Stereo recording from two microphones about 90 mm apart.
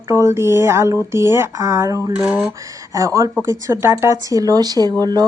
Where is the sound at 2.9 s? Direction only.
35° right (ahead or behind).